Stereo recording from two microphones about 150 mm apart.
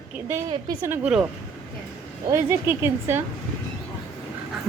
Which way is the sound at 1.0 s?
5° right (ahead or behind).